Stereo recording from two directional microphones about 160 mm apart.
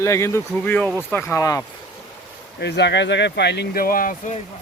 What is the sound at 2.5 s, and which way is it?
Speech, 90° left.